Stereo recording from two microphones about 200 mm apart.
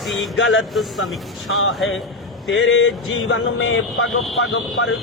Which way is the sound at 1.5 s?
80° left.